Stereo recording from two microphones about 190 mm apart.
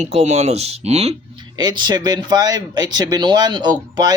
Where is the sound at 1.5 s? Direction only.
20° right (ahead or behind).